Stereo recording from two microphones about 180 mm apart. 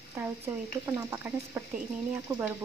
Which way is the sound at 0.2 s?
15° right (ahead or behind).